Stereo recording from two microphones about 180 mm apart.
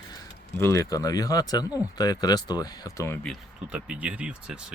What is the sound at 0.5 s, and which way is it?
Speech, 15° left (ahead or behind).